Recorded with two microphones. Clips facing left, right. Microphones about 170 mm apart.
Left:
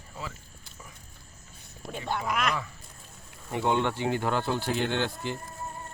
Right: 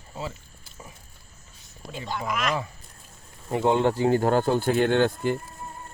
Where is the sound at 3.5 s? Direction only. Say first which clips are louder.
Right 5 dB; 35° right (ahead or behind).